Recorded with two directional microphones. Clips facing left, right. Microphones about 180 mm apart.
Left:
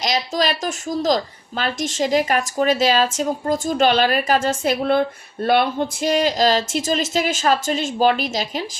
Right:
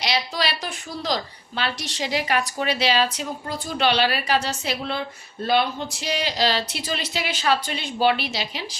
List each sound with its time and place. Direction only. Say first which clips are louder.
0.0 s speech: left 4 dB; 45° left (ahead or behind)